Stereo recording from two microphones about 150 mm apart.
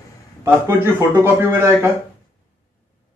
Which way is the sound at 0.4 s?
15° right (ahead or behind).